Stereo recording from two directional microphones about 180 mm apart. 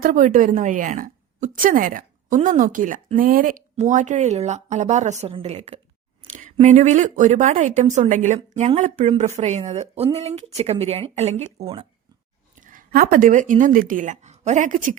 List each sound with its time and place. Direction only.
0.0 s a woman's voice: 50° right (ahead or behind); by 11.9 s 30° right (ahead or behind)
12.5 s speech: 50° right (ahead or behind)